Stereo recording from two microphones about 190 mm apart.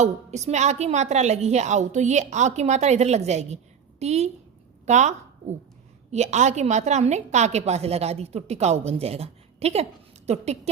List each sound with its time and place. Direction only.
0.0 s a woman's voice: 35° right (ahead or behind)